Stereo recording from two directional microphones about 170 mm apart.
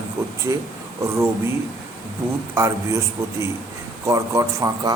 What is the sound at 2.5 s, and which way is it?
A man's voice, 15° right (ahead or behind).